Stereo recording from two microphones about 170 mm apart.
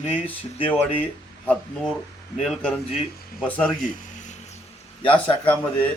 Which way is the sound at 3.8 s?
45° left (ahead or behind).